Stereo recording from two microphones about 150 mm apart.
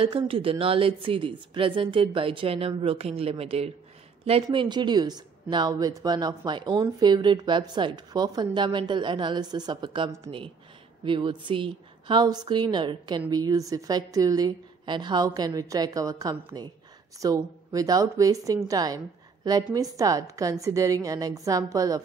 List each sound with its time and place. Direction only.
0.0 s a woman's voice: 35° right (ahead or behind)
4.5 s a woman's voice: 30° right (ahead or behind)